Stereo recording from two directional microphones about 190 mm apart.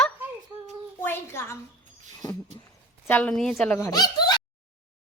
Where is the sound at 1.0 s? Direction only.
10° left (ahead or behind).